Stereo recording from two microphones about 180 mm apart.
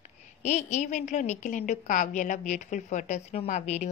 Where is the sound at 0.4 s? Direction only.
40° left (ahead or behind).